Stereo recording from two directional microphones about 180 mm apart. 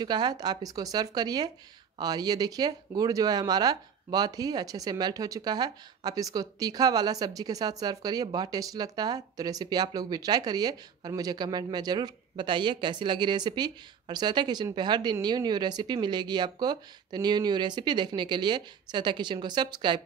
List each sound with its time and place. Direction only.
0.0 s speech: 25° right (ahead or behind)